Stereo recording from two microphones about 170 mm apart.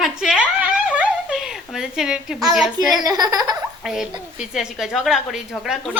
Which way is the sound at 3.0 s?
20° right (ahead or behind).